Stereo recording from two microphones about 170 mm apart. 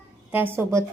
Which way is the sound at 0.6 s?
15° right (ahead or behind).